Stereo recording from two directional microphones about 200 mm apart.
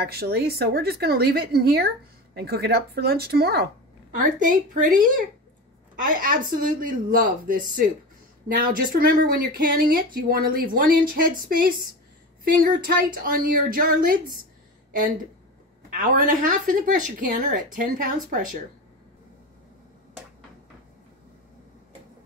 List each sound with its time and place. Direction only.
0.0 s speech: 50° right (ahead or behind)
16.0 s a woman's voice: 40° right (ahead or behind)